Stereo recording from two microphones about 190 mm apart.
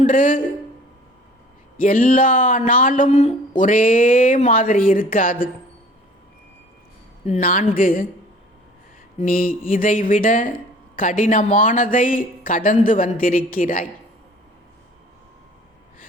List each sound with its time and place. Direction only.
0.0 s speech: 45° left (ahead or behind)
1.8 s speech: 45° left (ahead or behind)
7.3 s speech: 45° left (ahead or behind)
9.1 s speech: 45° left (ahead or behind)